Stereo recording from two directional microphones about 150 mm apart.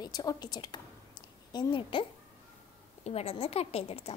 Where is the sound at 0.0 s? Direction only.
25° left (ahead or behind).